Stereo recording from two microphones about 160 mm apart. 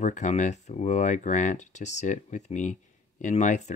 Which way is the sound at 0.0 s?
50° left (ahead or behind).